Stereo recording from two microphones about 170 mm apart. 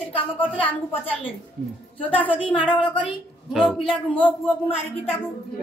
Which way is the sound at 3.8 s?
30° left (ahead or behind).